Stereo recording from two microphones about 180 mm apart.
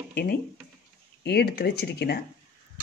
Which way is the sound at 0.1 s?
60° left (ahead or behind).